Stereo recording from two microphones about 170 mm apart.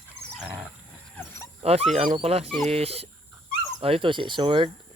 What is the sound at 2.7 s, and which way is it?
Speech, 35° right (ahead or behind).